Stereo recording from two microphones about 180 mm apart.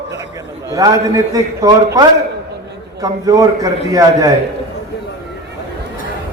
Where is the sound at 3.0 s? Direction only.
20° right (ahead or behind).